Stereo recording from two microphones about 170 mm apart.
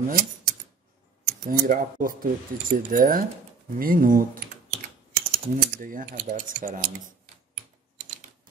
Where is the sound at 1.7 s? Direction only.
55° right (ahead or behind).